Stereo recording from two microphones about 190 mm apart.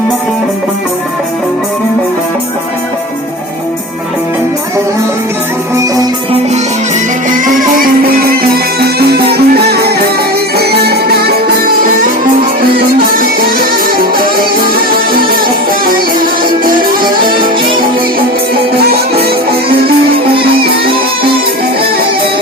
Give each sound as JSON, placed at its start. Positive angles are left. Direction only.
{"t": 7.3, "sound": "music", "side_deg": -45}
{"t": 13.2, "sound": "music", "side_deg": -50}
{"t": 16.6, "sound": "music", "side_deg": -50}
{"t": 19.2, "sound": "music", "side_deg": -55}